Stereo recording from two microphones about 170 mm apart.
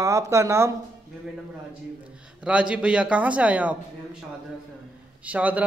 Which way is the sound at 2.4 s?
5° right (ahead or behind).